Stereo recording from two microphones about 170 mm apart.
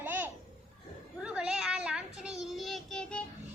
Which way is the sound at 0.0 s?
10° right (ahead or behind).